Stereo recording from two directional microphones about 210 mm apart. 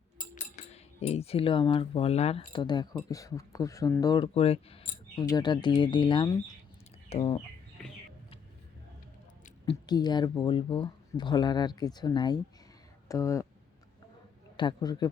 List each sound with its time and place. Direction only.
0.3 s speech: 30° left (ahead or behind)
9.6 s speech: 20° left (ahead or behind)
14.5 s speech: 20° left (ahead or behind)